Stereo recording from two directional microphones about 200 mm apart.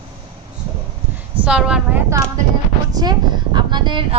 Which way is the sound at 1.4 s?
5° right (ahead or behind).